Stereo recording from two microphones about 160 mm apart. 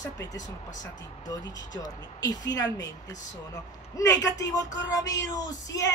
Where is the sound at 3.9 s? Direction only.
20° left (ahead or behind).